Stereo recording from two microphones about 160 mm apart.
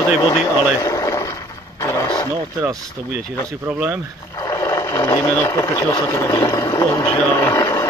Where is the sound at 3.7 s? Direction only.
10° right (ahead or behind).